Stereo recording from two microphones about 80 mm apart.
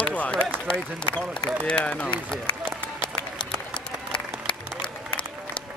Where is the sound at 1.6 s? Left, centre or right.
Centre.